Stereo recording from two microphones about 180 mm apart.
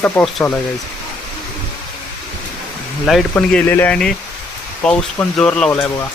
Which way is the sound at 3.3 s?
10° left (ahead or behind).